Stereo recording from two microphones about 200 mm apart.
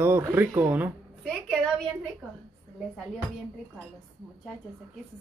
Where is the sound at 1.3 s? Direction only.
5° left (ahead or behind).